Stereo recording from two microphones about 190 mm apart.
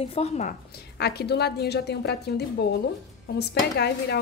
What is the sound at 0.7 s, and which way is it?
A woman's voice, 60° left (ahead or behind).